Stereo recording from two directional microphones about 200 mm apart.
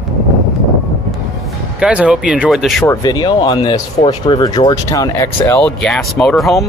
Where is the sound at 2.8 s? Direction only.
15° left (ahead or behind); by 6.6 s centre (ahead or behind).